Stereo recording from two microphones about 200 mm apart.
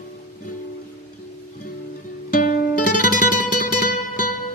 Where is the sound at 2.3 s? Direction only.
40° left (ahead or behind).